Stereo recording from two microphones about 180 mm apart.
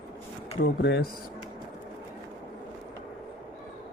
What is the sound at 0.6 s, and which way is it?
Speech, 70° left (ahead or behind).